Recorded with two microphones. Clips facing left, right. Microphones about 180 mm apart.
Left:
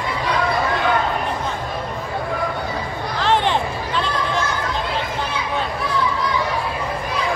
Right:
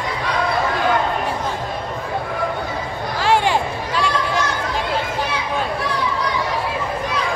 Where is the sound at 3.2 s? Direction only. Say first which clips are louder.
Right 1 dB; 10° right (ahead or behind).